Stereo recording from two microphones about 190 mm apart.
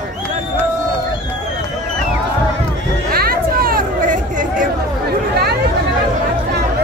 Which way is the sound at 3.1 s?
50° right (ahead or behind).